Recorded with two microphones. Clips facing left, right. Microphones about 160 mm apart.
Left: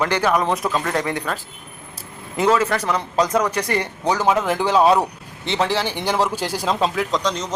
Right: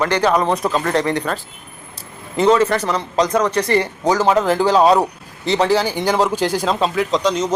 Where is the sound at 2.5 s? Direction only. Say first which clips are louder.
Right 3 dB; 5° left (ahead or behind).